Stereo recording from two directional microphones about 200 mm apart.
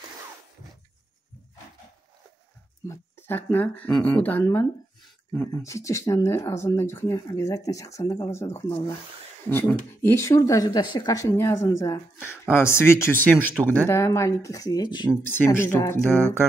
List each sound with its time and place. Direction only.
2.9 s speech: 10° left (ahead or behind)
15.2 s speech: 10° left (ahead or behind)